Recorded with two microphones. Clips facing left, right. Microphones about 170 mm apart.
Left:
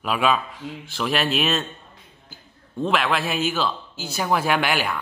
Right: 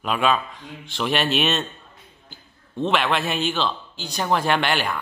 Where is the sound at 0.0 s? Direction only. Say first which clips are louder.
Even; 5° left (ahead or behind).